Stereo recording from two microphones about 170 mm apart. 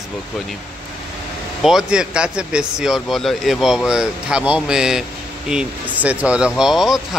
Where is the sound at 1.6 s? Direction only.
Centre (ahead or behind).